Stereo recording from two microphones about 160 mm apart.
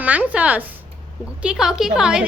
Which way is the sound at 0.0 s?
10° right (ahead or behind).